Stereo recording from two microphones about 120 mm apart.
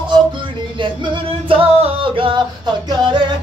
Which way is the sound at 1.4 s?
50° right (ahead or behind).